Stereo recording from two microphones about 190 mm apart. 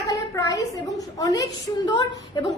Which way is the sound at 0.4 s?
15° left (ahead or behind).